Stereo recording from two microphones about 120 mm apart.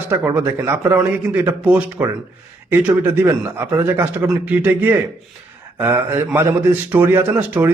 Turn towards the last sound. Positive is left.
turn(degrees=-20)  # may be behind; listen again after turning